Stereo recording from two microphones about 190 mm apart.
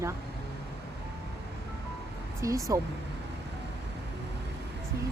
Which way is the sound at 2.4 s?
15° right (ahead or behind).